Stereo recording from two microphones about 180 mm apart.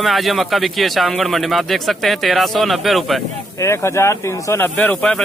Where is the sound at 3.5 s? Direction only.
15° left (ahead or behind).